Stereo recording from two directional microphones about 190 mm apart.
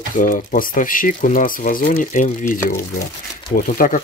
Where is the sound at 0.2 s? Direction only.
45° left (ahead or behind).